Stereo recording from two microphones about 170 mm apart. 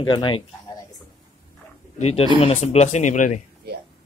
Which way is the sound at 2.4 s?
40° left (ahead or behind).